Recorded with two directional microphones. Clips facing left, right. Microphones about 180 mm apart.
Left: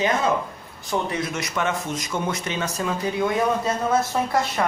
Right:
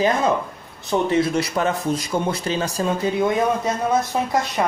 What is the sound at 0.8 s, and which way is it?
A man's voice, 25° right (ahead or behind).